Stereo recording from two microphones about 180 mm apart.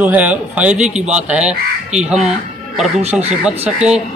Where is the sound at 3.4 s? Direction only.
5° right (ahead or behind).